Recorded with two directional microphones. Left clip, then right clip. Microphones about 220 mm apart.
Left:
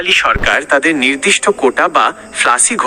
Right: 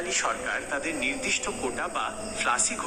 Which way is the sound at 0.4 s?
45° left (ahead or behind).